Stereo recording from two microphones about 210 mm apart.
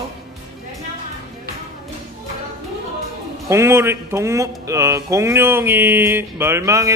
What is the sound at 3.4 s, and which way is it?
Speech, 15° right (ahead or behind).